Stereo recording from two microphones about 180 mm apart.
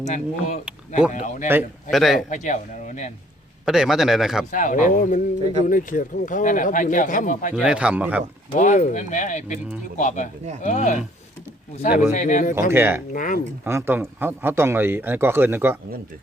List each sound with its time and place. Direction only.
0.0 s speech: 40° left (ahead or behind)
1.9 s speech: centre (ahead or behind)
2.3 s speech: 45° left (ahead or behind)
3.7 s speech: centre (ahead or behind)
4.5 s speech: 45° left (ahead or behind)
7.5 s a man's voice: 5° right (ahead or behind)
8.5 s speech: 45° left (ahead or behind)
12.1 s speech: 40° left (ahead or behind)
12.7 s a man's voice: 10° right (ahead or behind)
13.1 s speech: 45° left (ahead or behind)
13.7 s a man's voice: 15° right (ahead or behind)